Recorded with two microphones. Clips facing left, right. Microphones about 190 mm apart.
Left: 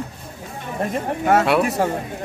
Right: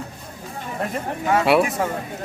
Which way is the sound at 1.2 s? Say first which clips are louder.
Left 3 dB; 50° left (ahead or behind).